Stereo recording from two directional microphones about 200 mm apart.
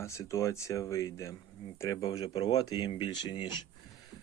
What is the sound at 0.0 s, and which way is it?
Speech, 15° left (ahead or behind).